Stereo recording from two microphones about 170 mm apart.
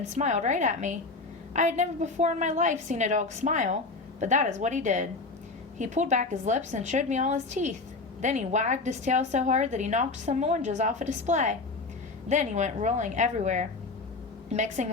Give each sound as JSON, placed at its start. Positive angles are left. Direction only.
{"t": 0.0, "sound": "a woman's voice", "side_deg": -45}